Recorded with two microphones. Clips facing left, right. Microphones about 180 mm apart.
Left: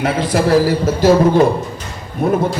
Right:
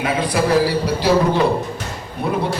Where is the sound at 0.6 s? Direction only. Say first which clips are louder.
Left 5 dB; 45° left (ahead or behind).